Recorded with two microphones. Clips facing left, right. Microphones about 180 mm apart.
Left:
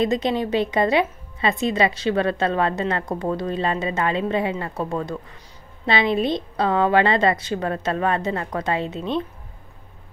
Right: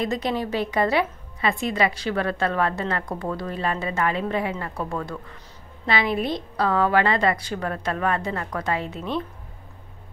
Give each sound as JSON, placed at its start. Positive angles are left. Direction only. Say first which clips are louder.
{"t": 0.0, "sound": "speech", "louder": "left 4 dB", "side_deg": 20}